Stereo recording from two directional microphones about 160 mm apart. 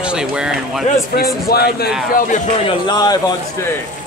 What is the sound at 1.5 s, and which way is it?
Speech, 75° left (ahead or behind).